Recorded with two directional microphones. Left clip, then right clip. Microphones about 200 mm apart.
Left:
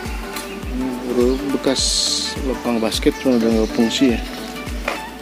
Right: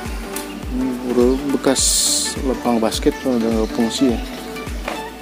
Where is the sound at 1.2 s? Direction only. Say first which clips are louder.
Right 2 dB; 10° right (ahead or behind).